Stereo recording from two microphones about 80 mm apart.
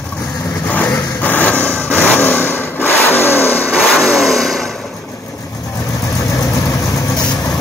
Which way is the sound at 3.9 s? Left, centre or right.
Centre.